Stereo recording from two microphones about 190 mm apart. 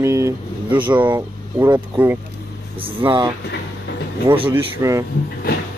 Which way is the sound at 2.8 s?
30° right (ahead or behind).